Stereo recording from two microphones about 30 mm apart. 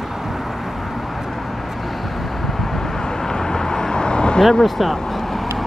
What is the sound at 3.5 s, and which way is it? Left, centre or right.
Vehicle, left.